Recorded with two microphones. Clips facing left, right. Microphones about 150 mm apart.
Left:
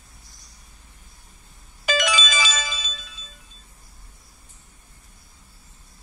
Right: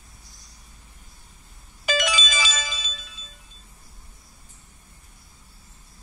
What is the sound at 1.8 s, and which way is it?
Ringtone, 90° left.